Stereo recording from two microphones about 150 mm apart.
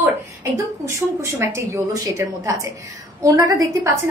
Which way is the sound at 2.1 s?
20° right (ahead or behind).